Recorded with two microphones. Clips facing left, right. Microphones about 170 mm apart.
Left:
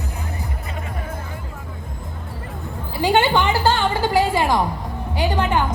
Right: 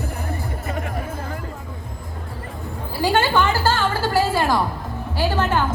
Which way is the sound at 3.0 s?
20° left (ahead or behind).